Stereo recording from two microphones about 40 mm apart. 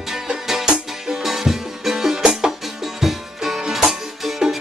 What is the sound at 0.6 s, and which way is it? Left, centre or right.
Music, centre.